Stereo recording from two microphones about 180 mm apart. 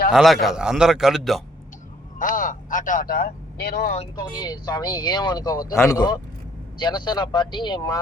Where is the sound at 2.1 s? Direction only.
50° left (ahead or behind); by 3.9 s 65° left (ahead or behind).